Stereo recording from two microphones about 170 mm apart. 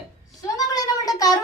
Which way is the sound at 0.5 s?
20° left (ahead or behind).